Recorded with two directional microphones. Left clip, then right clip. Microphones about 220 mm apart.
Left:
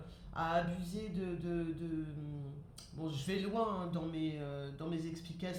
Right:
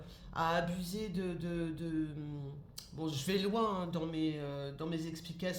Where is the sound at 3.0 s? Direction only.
45° right (ahead or behind).